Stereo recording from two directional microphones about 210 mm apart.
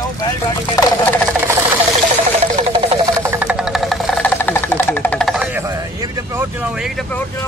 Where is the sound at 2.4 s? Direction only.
30° right (ahead or behind).